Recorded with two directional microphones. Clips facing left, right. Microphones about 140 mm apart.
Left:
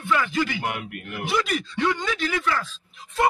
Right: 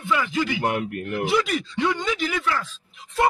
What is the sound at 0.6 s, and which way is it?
Speech, 40° right (ahead or behind).